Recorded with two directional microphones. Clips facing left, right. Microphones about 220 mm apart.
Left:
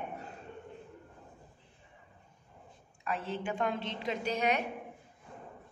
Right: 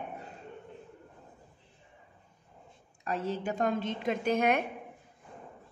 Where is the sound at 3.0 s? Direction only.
40° right (ahead or behind).